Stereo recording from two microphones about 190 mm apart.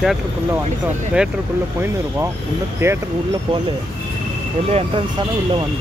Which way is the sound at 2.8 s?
15° right (ahead or behind).